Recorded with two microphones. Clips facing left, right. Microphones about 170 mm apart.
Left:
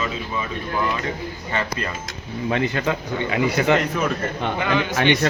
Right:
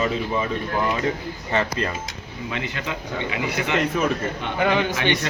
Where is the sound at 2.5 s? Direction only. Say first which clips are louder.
Left 7 dB; 45° left (ahead or behind).